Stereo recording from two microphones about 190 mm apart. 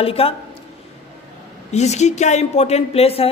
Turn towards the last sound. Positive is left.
turn(degrees=30)  # may be behind; listen again after turning